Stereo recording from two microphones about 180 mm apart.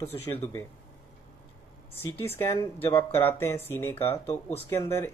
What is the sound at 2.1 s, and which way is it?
Speech, 10° left (ahead or behind).